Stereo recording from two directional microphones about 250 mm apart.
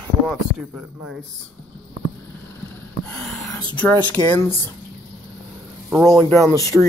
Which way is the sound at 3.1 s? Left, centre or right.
Centre.